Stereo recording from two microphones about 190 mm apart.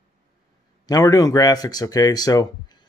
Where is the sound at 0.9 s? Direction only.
20° left (ahead or behind).